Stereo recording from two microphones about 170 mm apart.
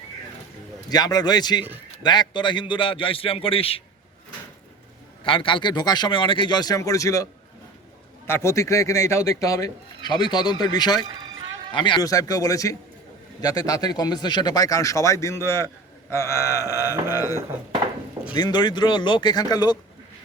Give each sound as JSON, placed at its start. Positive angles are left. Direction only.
{"t": 0.9, "sound": "a man's voice", "side_deg": 25}
{"t": 5.2, "sound": "a man's voice", "side_deg": 30}
{"t": 8.3, "sound": "a man's voice", "side_deg": 15}
{"t": 11.0, "sound": "music", "side_deg": -25}
{"t": 11.7, "sound": "a man's voice", "side_deg": 30}
{"t": 16.0, "sound": "a sound", "side_deg": 15}
{"t": 17.1, "sound": "a man's voice", "side_deg": 20}